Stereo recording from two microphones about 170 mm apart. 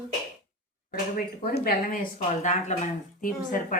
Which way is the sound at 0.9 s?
60° left (ahead or behind).